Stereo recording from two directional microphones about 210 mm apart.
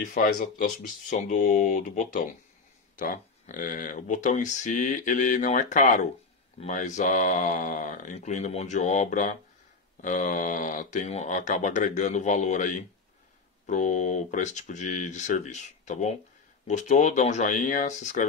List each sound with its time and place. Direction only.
0.0 s speech: 40° left (ahead or behind)